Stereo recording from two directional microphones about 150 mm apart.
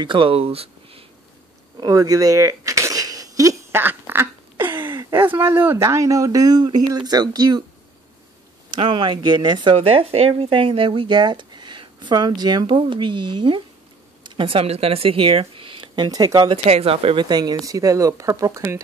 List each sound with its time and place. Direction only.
0.0 s speech: 35° right (ahead or behind)
1.8 s a sound: 25° right (ahead or behind)
4.9 s a sound: 30° right (ahead or behind)
5.3 s speech: 15° right (ahead or behind)
8.6 s speech: 30° right (ahead or behind)
9.8 s speech: 40° right (ahead or behind); by 16.5 s 25° right (ahead or behind)
16.6 s speech: 40° right (ahead or behind); by 18.8 s 20° right (ahead or behind)